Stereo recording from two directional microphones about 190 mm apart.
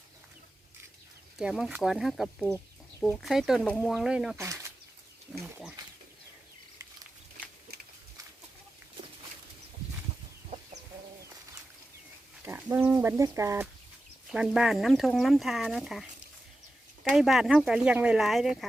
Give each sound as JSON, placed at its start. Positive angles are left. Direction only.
{"t": 1.4, "sound": "speech", "side_deg": -5}
{"t": 4.4, "sound": "speech", "side_deg": -15}
{"t": 7.7, "sound": "a sound", "side_deg": -55}
{"t": 12.5, "sound": "speech", "side_deg": -10}
{"t": 14.3, "sound": "speech", "side_deg": -5}